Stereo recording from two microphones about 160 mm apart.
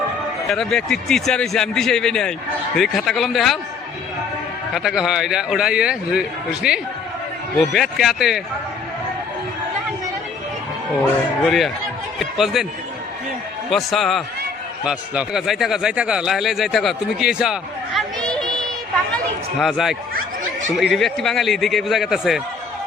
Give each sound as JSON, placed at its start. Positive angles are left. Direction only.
{"t": 0.4, "sound": "a man's voice", "side_deg": 0}
{"t": 4.7, "sound": "a man's voice", "side_deg": -5}
{"t": 11.0, "sound": "speech", "side_deg": 0}
{"t": 13.7, "sound": "a man's voice", "side_deg": 0}